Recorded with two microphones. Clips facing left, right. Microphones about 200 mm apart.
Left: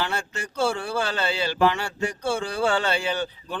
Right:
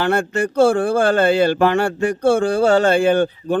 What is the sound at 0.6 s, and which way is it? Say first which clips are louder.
Speech: right 10 dB; 50° right (ahead or behind).